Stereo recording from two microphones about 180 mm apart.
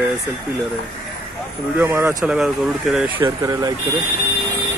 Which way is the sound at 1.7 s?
15° right (ahead or behind).